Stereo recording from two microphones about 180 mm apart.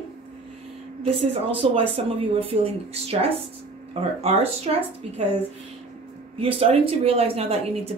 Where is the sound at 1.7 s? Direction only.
30° right (ahead or behind).